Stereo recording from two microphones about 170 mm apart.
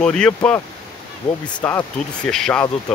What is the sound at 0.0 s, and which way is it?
Speech, 5° left (ahead or behind).